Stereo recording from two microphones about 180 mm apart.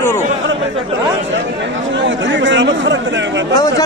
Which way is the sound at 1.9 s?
90° right.